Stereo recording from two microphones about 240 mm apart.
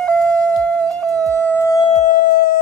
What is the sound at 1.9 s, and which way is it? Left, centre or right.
Music, left.